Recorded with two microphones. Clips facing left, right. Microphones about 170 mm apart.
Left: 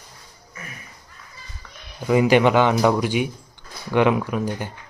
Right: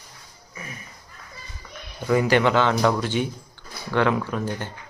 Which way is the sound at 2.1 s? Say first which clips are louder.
Left 3 dB; 15° left (ahead or behind).